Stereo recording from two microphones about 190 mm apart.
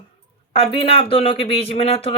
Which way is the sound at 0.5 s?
30° left (ahead or behind).